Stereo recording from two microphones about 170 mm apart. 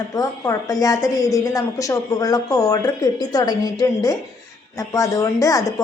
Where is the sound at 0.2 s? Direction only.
20° left (ahead or behind).